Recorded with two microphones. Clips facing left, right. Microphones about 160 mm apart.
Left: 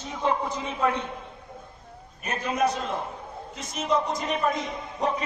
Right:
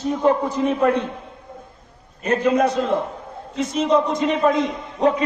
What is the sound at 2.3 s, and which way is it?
Speech, 65° right (ahead or behind).